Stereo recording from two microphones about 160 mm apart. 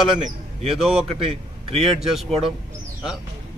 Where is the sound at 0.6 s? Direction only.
Centre (ahead or behind).